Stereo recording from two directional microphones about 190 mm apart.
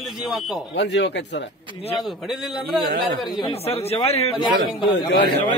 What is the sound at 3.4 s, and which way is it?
Speech, 30° left (ahead or behind).